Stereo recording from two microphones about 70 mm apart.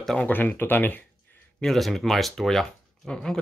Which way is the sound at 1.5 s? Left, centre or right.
Centre.